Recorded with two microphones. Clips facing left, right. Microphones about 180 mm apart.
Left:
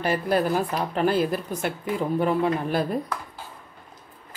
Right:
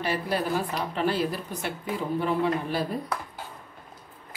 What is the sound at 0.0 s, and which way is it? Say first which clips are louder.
Speech: left 5 dB; 50° left (ahead or behind).